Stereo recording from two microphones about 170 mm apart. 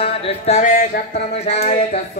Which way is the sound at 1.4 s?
40° left (ahead or behind).